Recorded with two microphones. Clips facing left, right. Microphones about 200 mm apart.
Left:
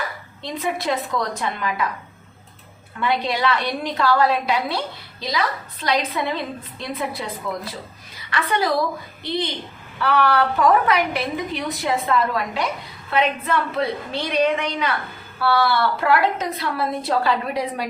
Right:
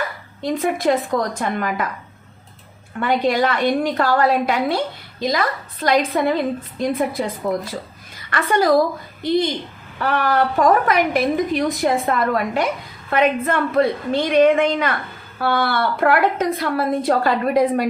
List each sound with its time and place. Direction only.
0.4 s a woman's voice: 50° right (ahead or behind)
3.0 s a woman's voice: 50° right (ahead or behind)